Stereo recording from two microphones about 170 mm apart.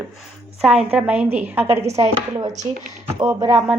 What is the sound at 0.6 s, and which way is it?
A woman's voice, 5° right (ahead or behind).